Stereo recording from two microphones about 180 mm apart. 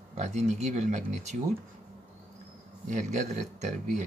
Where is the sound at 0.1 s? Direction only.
40° right (ahead or behind).